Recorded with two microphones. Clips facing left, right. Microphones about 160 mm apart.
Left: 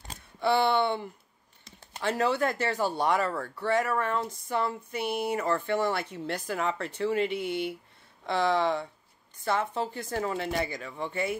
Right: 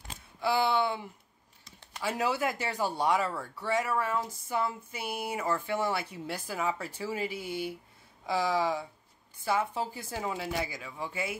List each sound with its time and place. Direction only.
0.4 s speech: 5° right (ahead or behind)
2.0 s speech: 10° right (ahead or behind)
7.2 s speech: 65° left (ahead or behind)
8.3 s speech: 10° right (ahead or behind)